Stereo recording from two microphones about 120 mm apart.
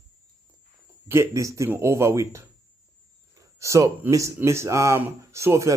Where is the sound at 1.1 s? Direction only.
25° right (ahead or behind).